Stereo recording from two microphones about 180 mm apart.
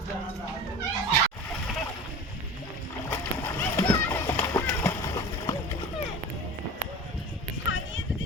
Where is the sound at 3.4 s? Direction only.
10° left (ahead or behind).